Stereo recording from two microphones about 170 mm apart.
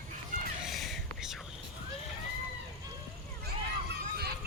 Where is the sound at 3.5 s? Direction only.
70° right (ahead or behind).